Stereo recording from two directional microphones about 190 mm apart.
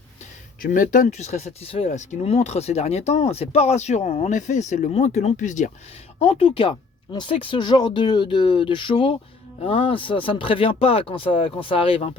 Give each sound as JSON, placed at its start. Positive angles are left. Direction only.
{"t": 0.6, "sound": "speech", "side_deg": 45}